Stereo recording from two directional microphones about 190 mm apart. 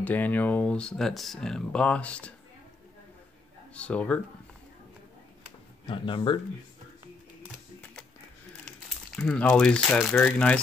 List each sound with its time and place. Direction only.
0.0 s speech: 10° left (ahead or behind)
3.7 s speech: 5° left (ahead or behind)
5.9 s speech: 25° left (ahead or behind)
9.1 s speech: 5° left (ahead or behind)